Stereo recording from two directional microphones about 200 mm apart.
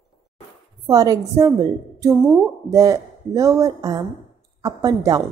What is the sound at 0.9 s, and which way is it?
Speech, 20° right (ahead or behind).